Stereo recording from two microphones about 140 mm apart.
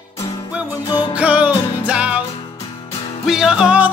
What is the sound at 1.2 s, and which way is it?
Music, 10° right (ahead or behind).